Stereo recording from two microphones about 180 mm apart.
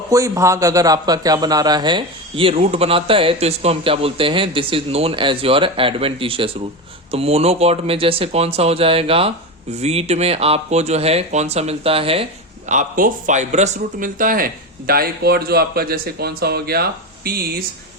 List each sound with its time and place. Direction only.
0.1 s a man's voice: 15° right (ahead or behind); by 17.6 s 60° right (ahead or behind)